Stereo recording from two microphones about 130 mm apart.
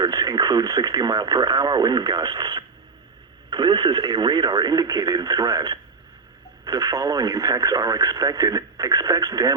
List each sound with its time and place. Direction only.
0.0 s speech: 30° right (ahead or behind)